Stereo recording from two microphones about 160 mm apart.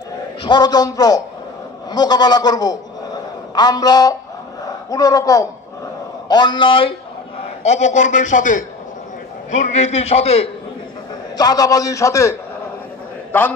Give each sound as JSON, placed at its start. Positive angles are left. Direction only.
{"t": 0.4, "sound": "a man's voice", "side_deg": 25}
{"t": 7.6, "sound": "a man's voice", "side_deg": 45}
{"t": 11.3, "sound": "a man's voice", "side_deg": 25}